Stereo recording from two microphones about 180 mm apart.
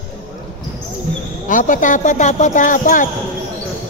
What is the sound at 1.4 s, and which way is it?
Speech, 45° left (ahead or behind).